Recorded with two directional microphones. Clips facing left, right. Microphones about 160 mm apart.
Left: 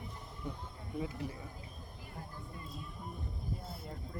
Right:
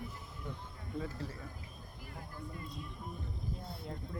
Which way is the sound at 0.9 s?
15° left (ahead or behind).